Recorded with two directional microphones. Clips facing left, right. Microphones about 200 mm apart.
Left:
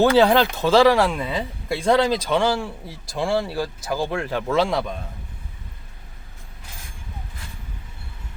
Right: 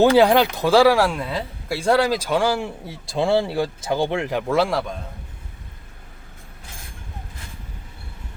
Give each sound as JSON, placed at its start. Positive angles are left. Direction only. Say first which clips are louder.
{"t": 0.0, "sound": "speech", "louder": "right 1 dB", "side_deg": -15}
{"t": 2.8, "sound": "speech", "louder": "right 4 dB", "side_deg": -25}